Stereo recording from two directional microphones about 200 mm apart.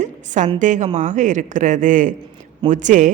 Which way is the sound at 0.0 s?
35° right (ahead or behind).